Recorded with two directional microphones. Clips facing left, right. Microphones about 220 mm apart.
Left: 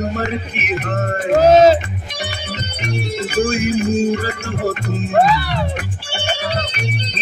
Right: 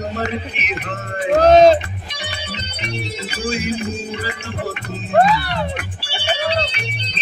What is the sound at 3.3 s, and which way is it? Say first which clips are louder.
Music: left 6 dB; 50° left (ahead or behind).